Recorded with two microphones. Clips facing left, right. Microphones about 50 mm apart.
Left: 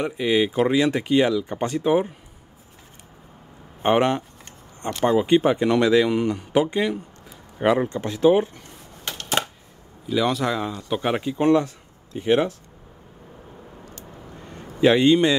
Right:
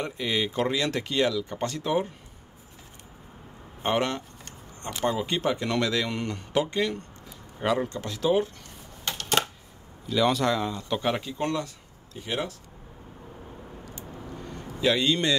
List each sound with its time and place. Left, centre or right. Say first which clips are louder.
0.0 s speech: left 7 dB; centre
3.8 s speech: left 7 dB; left
7.6 s speech: left 6 dB; left
9.0 s a sound: left 1 dB; centre
10.0 s a man's voice: left 1 dB; centre; by 12.5 s left
14.8 s speech: left 8 dB; left